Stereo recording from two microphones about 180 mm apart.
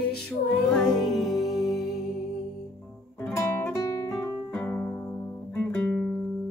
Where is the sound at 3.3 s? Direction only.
10° left (ahead or behind).